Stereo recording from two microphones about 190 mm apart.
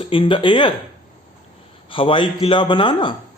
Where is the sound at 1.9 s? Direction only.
25° left (ahead or behind).